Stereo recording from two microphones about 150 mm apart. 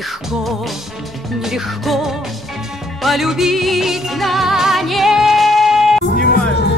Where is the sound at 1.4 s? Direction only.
Centre (ahead or behind).